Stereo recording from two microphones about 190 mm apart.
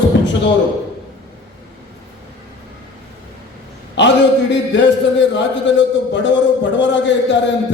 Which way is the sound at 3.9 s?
70° left (ahead or behind).